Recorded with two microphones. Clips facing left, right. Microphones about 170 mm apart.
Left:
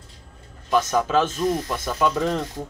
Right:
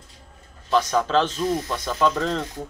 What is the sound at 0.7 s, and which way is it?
A man's voice, 5° left (ahead or behind).